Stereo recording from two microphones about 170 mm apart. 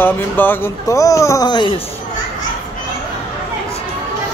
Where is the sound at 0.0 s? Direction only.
10° left (ahead or behind).